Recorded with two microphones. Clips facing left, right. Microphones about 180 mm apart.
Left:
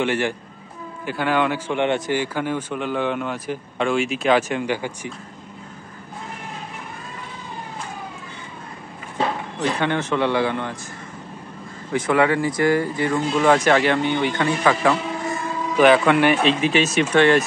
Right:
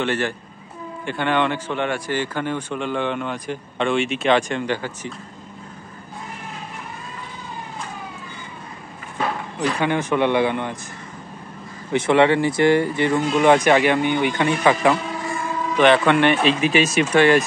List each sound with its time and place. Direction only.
0.0 s a man's voice: 15° left (ahead or behind)
2.1 s speech: 10° left (ahead or behind)
9.6 s speech: 10° right (ahead or behind)
11.9 s speech: 25° right (ahead or behind)
15.8 s speech: 5° left (ahead or behind)
16.4 s speech: 10° right (ahead or behind)